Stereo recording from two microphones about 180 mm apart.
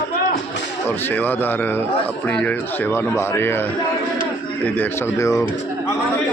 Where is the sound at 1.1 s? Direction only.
10° left (ahead or behind).